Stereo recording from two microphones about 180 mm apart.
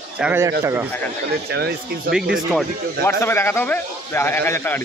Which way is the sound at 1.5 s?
65° right (ahead or behind).